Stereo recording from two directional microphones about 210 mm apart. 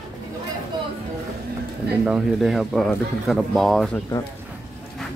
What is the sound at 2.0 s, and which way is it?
Speech, centre (ahead or behind).